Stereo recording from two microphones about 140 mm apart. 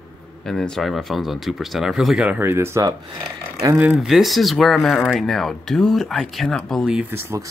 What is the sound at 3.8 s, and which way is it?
Speech, 10° right (ahead or behind).